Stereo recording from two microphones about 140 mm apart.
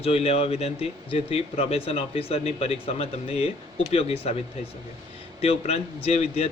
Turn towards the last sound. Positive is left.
turn(degrees=50)  # may be behind; listen again after turning